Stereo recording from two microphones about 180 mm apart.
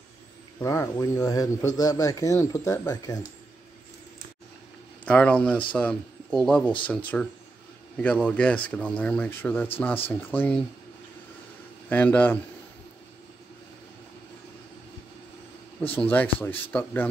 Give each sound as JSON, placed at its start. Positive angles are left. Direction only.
{"t": 0.6, "sound": "speech", "side_deg": 15}
{"t": 5.0, "sound": "speech", "side_deg": 5}
{"t": 11.9, "sound": "speech", "side_deg": 10}
{"t": 15.9, "sound": "speech", "side_deg": 10}